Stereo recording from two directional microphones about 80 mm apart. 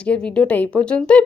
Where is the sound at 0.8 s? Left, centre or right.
Centre.